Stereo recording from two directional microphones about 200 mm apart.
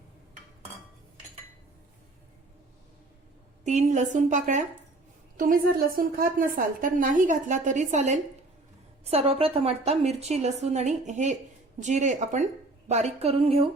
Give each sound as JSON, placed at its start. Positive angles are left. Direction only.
{"t": 3.7, "sound": "a woman's voice", "side_deg": -35}